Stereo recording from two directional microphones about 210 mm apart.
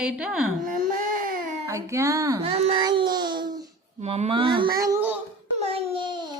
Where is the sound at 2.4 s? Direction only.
30° right (ahead or behind).